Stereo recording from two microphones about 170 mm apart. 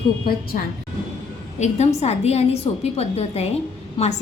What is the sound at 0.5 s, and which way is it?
A woman's voice, 50° left (ahead or behind).